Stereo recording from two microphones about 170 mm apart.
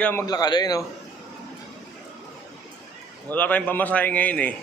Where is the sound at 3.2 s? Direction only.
10° left (ahead or behind).